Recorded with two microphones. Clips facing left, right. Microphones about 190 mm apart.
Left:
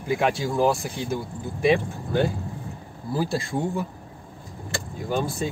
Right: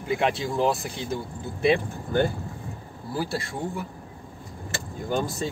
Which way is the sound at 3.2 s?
25° left (ahead or behind).